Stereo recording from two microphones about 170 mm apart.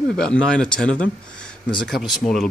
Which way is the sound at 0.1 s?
5° left (ahead or behind).